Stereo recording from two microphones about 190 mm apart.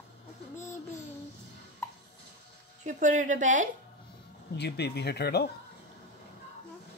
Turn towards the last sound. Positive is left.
turn(degrees=60)  # may be behind; listen again after turning